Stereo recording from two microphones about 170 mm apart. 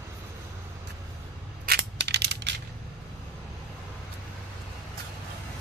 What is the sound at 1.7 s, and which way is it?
Crushing, 80° right.